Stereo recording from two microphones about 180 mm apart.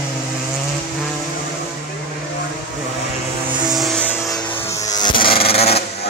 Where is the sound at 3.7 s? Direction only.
5° left (ahead or behind).